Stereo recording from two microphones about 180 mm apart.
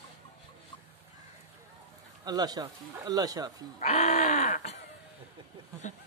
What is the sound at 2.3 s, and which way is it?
Speech, 20° right (ahead or behind).